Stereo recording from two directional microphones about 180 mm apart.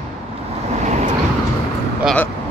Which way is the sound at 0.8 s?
40° right (ahead or behind).